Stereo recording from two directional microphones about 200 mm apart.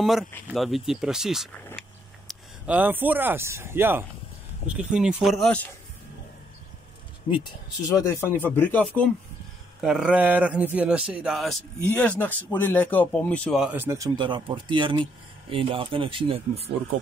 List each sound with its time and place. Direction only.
0.0 s speech: centre (ahead or behind)
7.2 s speech: 20° left (ahead or behind)
9.8 s speech: 5° right (ahead or behind); by 16.7 s 30° right (ahead or behind)